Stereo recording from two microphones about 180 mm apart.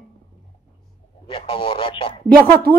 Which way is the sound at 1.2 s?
30° left (ahead or behind).